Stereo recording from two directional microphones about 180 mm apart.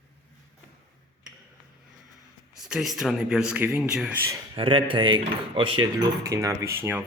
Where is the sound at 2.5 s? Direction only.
5° right (ahead or behind).